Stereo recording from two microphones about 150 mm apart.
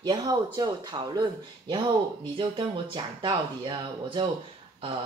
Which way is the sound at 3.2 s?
30° right (ahead or behind).